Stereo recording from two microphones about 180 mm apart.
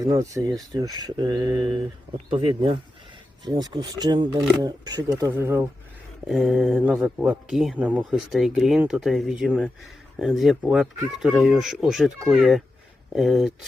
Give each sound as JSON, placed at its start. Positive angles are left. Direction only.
{"t": 0.0, "sound": "speech", "side_deg": -20}